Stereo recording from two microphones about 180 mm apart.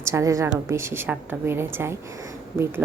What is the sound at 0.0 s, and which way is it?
Speech, 15° right (ahead or behind).